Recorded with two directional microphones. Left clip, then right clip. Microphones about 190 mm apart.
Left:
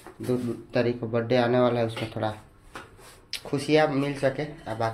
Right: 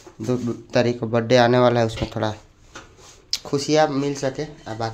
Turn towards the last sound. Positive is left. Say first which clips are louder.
# right 1 dB
turn(degrees=-30)  # may be behind; listen again after turning